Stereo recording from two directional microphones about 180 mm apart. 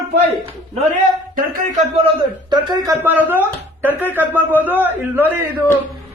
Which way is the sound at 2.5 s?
25° right (ahead or behind).